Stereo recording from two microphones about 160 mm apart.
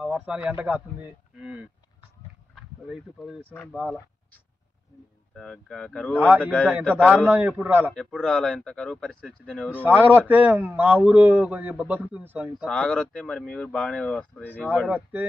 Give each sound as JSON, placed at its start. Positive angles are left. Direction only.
{"t": 0.0, "sound": "a man's voice", "side_deg": -10}
{"t": 1.4, "sound": "a sound", "side_deg": -10}
{"t": 2.5, "sound": "speech", "side_deg": 0}
{"t": 5.3, "sound": "speech", "side_deg": 5}
{"t": 6.1, "sound": "a man's voice", "side_deg": -10}
{"t": 6.8, "sound": "speech", "side_deg": 10}
{"t": 7.2, "sound": "a man's voice", "side_deg": -10}
{"t": 7.9, "sound": "speech", "side_deg": 5}
{"t": 9.8, "sound": "a man's voice", "side_deg": -10}
{"t": 12.6, "sound": "speech", "side_deg": 5}
{"t": 14.9, "sound": "a man's voice", "side_deg": -10}